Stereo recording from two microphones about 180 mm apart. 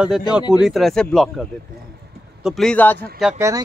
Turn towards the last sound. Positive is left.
turn(degrees=-15)  # may be behind; listen again after turning